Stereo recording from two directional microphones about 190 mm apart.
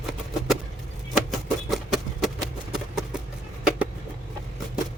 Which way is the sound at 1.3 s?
Centre (ahead or behind).